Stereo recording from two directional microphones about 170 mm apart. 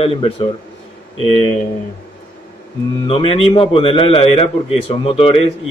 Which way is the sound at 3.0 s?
35° left (ahead or behind).